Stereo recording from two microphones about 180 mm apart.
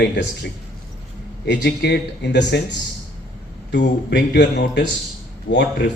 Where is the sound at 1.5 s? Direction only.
70° left (ahead or behind).